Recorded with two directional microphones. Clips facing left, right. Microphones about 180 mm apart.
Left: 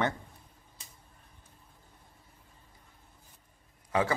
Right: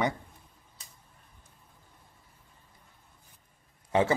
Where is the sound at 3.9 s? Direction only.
25° right (ahead or behind).